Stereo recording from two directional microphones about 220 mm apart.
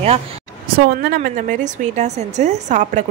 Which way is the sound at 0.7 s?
45° right (ahead or behind).